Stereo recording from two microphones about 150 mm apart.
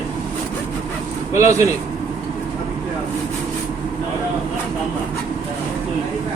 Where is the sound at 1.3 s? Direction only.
20° right (ahead or behind).